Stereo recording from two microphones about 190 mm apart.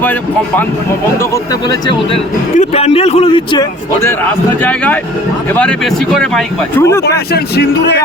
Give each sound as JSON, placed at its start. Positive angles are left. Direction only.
{"t": 0.0, "sound": "a man's voice", "side_deg": 10}
{"t": 4.6, "sound": "speech", "side_deg": 10}
{"t": 7.3, "sound": "speech", "side_deg": 60}